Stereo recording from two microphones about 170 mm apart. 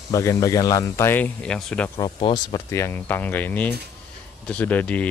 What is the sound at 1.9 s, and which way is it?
A man's voice, 25° left (ahead or behind).